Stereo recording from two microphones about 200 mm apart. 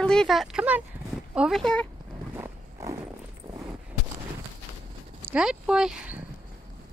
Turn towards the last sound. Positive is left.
turn(degrees=-5)  # may be behind; listen again after turning